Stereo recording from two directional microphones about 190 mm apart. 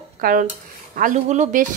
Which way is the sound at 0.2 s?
45° right (ahead or behind).